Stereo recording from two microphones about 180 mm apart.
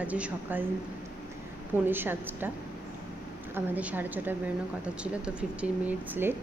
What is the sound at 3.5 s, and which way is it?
Speech, 10° right (ahead or behind).